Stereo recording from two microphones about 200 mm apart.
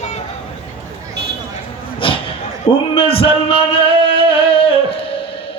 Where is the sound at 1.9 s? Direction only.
25° left (ahead or behind).